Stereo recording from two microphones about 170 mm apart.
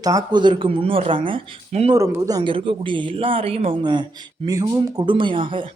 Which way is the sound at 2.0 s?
20° right (ahead or behind).